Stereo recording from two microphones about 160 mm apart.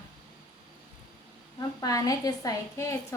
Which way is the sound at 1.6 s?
20° left (ahead or behind).